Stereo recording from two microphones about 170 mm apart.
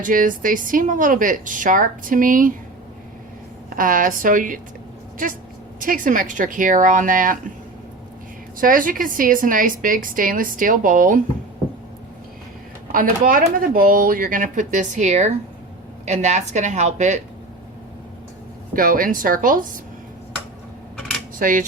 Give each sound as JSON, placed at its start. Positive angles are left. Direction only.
{"t": 0.0, "sound": "a woman's voice", "side_deg": -55}
{"t": 3.7, "sound": "a woman's voice", "side_deg": -55}
{"t": 8.6, "sound": "a woman's voice", "side_deg": -55}
{"t": 12.9, "sound": "a woman's voice", "side_deg": -55}
{"t": 18.7, "sound": "a woman's voice", "side_deg": -55}
{"t": 21.3, "sound": "a sound", "side_deg": -55}